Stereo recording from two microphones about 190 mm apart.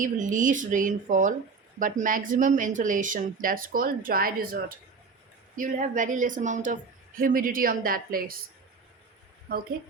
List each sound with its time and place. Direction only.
0.0 s speech: 45° right (ahead or behind)